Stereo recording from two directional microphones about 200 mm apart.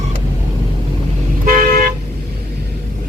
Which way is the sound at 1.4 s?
45° right (ahead or behind).